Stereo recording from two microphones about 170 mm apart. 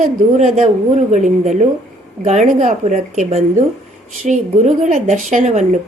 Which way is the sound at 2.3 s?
45° right (ahead or behind).